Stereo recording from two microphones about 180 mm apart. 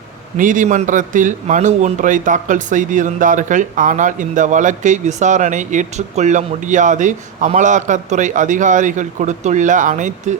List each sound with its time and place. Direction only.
0.3 s speech: 45° right (ahead or behind)